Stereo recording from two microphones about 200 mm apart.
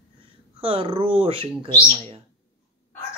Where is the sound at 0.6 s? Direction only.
25° right (ahead or behind).